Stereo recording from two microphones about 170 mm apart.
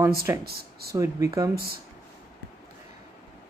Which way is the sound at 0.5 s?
65° right (ahead or behind).